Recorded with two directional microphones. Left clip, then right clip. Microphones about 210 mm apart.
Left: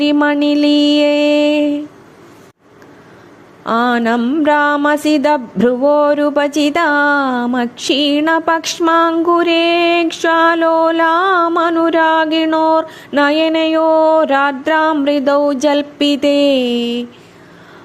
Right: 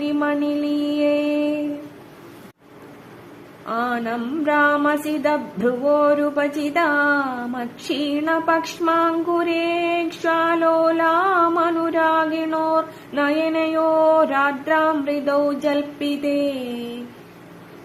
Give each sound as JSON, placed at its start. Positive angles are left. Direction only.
{"t": 0.0, "sound": "mantra", "side_deg": 45}
{"t": 3.7, "sound": "speech", "side_deg": 45}